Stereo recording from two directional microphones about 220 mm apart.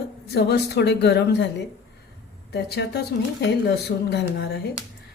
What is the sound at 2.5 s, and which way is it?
Speech, 50° left (ahead or behind).